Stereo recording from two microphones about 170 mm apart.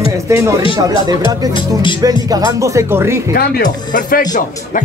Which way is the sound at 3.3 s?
55° left (ahead or behind).